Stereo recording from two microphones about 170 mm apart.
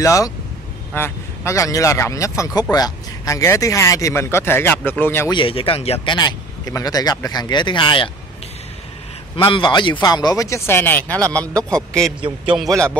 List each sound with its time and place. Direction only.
0.0 s speech: 20° left (ahead or behind)
5.3 s speech: 30° left (ahead or behind)
6.1 s speech: 25° left (ahead or behind)
9.4 s speech: 25° left (ahead or behind); by 11.1 s 10° left (ahead or behind)
11.4 s speech: 20° right (ahead or behind)